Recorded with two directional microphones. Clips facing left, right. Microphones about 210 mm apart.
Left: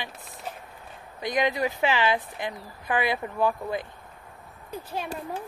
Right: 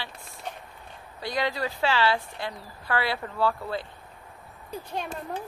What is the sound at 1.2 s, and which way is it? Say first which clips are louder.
Speech: left 3 dB; 20° left (ahead or behind).